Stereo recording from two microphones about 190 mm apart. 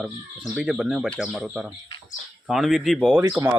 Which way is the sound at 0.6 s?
5° right (ahead or behind).